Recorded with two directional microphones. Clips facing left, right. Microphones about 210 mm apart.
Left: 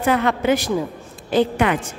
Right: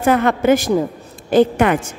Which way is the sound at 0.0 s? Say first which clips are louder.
Right 4 dB; 50° right (ahead or behind).